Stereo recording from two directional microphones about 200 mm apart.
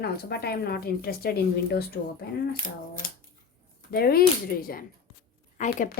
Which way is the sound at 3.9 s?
50° left (ahead or behind).